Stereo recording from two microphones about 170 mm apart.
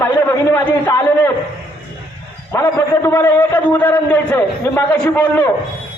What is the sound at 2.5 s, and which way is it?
A man's voice, 15° left (ahead or behind).